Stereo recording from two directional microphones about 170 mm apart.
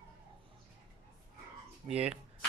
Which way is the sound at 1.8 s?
5° right (ahead or behind).